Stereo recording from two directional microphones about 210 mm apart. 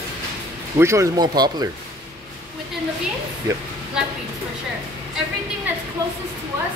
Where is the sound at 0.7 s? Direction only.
15° right (ahead or behind).